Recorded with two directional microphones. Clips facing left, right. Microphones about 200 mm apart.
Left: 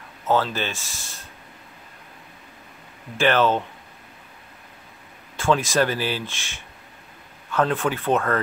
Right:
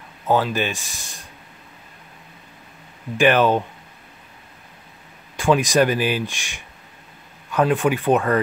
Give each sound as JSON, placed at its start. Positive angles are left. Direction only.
{"t": 0.3, "sound": "speech", "side_deg": -15}
{"t": 3.2, "sound": "speech", "side_deg": -15}
{"t": 5.4, "sound": "speech", "side_deg": -15}